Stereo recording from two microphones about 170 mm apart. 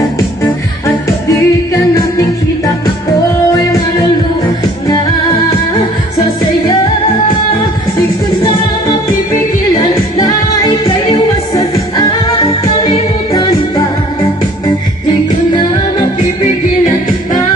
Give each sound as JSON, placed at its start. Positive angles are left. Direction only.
{"t": 0.8, "sound": "music", "side_deg": 20}
{"t": 10.7, "sound": "music", "side_deg": 30}